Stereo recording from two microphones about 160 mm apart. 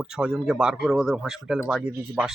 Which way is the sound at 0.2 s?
5° right (ahead or behind).